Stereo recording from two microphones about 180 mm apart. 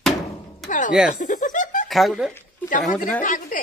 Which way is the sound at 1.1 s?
45° left (ahead or behind).